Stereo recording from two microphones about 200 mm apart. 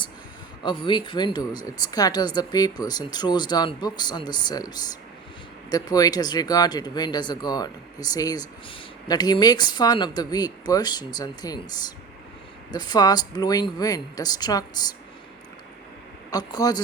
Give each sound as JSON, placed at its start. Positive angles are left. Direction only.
{"t": 0.6, "sound": "speech", "side_deg": 25}
{"t": 16.3, "sound": "speech", "side_deg": 20}